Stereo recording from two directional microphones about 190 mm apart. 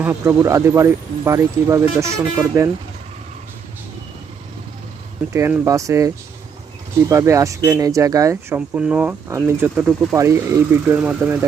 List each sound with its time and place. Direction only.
0.0 s speech: 10° right (ahead or behind)
5.3 s speech: 15° right (ahead or behind)
7.1 s speech: 15° right (ahead or behind)